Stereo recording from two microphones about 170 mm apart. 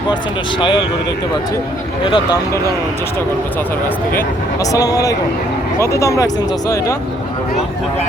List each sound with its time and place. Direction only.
2.0 s speech: 30° left (ahead or behind)
4.7 s speech: 20° left (ahead or behind)